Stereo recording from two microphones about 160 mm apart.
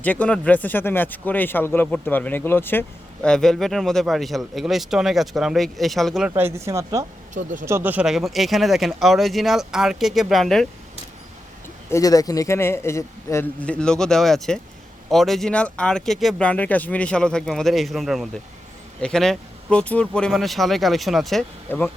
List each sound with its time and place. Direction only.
0.0 s speech: 10° left (ahead or behind)
6.3 s speech: 15° right (ahead or behind); by 10.7 s centre (ahead or behind)
11.9 s speech: 20° left (ahead or behind); by 21.4 s centre (ahead or behind)
21.7 s speech: 15° left (ahead or behind)